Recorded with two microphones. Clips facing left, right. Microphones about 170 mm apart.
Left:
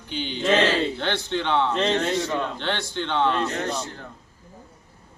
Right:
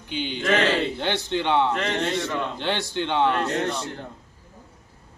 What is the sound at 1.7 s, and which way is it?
Speech, 25° left (ahead or behind).